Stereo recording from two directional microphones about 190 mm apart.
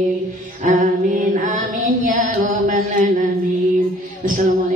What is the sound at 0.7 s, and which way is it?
Music, 40° right (ahead or behind).